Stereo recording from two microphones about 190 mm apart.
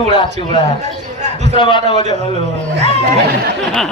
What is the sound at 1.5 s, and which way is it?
Speech, 25° left (ahead or behind).